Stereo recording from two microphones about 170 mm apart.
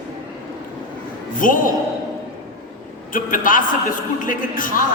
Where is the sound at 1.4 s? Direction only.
55° left (ahead or behind).